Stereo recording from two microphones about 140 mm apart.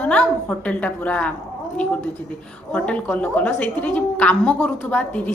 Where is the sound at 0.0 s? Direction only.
10° left (ahead or behind).